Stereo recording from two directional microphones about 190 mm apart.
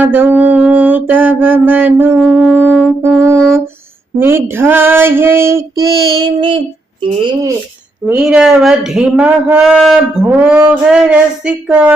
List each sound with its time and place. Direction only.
0.0 s female singing: 10° right (ahead or behind)
2.1 s speech: centre (ahead or behind)
3.0 s female singing: 15° right (ahead or behind)
7.0 s speech: 25° right (ahead or behind)
8.0 s speech: 5° right (ahead or behind)